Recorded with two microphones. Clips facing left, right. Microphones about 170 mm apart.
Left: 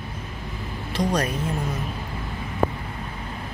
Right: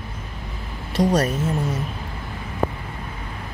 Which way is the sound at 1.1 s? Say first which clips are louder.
Right 4 dB; 45° right (ahead or behind).